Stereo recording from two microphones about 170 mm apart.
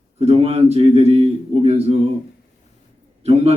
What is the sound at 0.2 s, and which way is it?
A man's voice, 35° right (ahead or behind).